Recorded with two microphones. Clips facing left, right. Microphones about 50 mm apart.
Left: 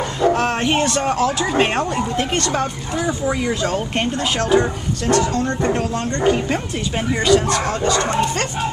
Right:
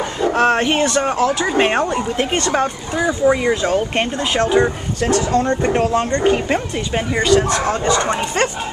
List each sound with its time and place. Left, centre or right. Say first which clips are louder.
0.2 s speech: right 2 dB; centre
5.7 s speech: right 4 dB; right
7.1 s speech: even; centre
7.6 s speech: right 2 dB; centre